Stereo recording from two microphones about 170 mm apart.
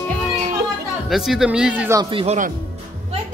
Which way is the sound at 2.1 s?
40° right (ahead or behind).